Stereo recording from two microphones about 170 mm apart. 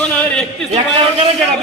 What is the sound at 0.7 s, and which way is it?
Speech, 40° right (ahead or behind).